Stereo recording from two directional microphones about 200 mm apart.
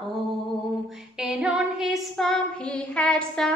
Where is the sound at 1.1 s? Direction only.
5° right (ahead or behind).